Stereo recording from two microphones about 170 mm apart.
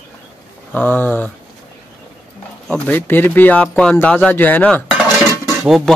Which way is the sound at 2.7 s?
10° left (ahead or behind).